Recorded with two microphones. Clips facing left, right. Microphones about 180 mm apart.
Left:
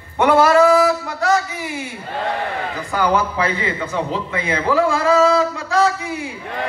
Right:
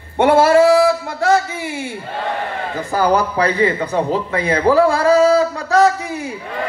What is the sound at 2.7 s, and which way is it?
A man's voice, 40° right (ahead or behind).